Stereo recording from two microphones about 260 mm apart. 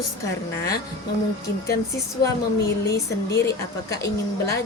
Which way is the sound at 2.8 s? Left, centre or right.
Centre.